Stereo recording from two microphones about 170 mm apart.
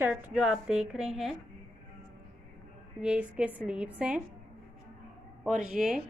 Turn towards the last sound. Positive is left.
turn(degrees=-5)  # may be behind; listen again after turning